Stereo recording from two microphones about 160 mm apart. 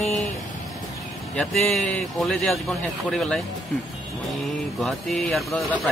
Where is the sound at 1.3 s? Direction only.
Centre (ahead or behind).